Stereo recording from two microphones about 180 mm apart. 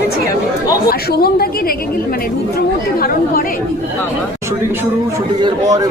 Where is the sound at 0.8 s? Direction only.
55° left (ahead or behind).